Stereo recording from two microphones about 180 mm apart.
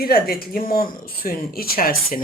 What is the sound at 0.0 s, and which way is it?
Cutlery, 55° left (ahead or behind).